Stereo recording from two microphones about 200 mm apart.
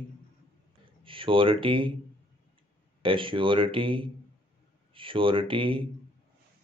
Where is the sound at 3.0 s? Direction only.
25° right (ahead or behind).